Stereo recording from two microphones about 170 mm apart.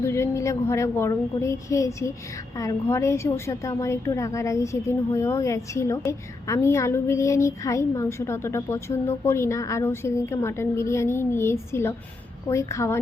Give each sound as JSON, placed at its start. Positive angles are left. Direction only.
{"t": 0.0, "sound": "a woman's voice", "side_deg": 15}